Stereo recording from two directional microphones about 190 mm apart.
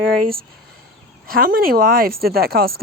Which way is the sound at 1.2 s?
50° right (ahead or behind).